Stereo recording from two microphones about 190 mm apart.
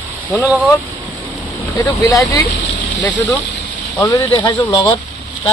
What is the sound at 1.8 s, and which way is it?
Speech, 20° left (ahead or behind).